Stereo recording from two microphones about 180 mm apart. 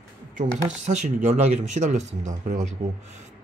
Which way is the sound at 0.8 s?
40° right (ahead or behind).